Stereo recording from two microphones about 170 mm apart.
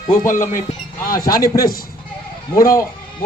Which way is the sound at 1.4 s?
60° left (ahead or behind).